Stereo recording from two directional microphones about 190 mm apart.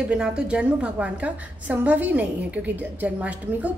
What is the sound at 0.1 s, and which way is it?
A woman's voice, 5° right (ahead or behind).